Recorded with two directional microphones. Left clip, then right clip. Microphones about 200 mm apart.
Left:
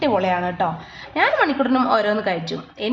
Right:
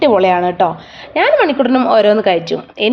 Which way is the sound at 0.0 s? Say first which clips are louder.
Right 9 dB; 40° right (ahead or behind).